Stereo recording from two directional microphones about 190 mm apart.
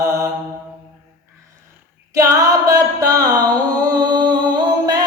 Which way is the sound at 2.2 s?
20° right (ahead or behind).